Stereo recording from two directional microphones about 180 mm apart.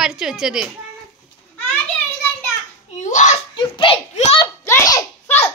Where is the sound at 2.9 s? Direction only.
45° left (ahead or behind).